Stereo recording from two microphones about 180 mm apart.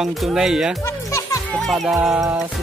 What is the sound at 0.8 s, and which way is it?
Speech, 15° left (ahead or behind).